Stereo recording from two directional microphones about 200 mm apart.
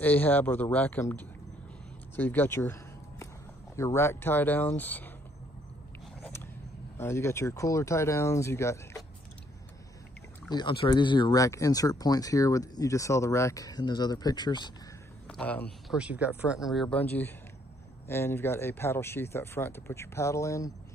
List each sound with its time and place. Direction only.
0.0 s speech: 10° left (ahead or behind)
2.1 s a sound: 10° left (ahead or behind)
3.7 s speech: 15° left (ahead or behind)
7.0 s speech: 15° left (ahead or behind)
10.5 s speech: 25° left (ahead or behind)
15.2 s a man's voice: 5° left (ahead or behind)
15.9 s speech: 5° right (ahead or behind); by 20.7 s 15° left (ahead or behind)